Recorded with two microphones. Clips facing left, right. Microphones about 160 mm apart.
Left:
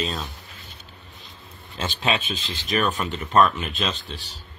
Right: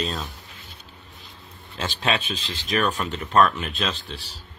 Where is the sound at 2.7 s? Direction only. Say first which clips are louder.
Even; 5° left (ahead or behind).